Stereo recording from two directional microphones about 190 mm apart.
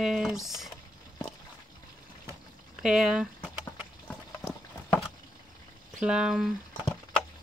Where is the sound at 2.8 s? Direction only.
5° right (ahead or behind).